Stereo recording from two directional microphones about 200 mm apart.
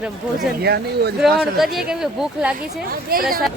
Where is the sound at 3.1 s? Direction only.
45° right (ahead or behind).